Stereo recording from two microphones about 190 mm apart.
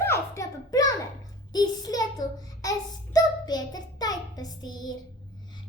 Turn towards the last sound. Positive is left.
turn(degrees=20)  # may be behind; listen again after turning